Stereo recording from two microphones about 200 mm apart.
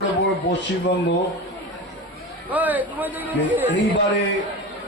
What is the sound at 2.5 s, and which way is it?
A man's voice, 10° right (ahead or behind).